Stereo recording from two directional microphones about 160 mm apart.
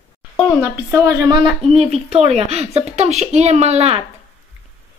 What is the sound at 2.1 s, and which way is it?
Speech, 40° right (ahead or behind).